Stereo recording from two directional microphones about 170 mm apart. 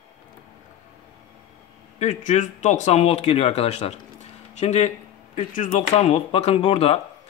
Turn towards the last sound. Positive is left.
turn(degrees=35)  # may be behind; listen again after turning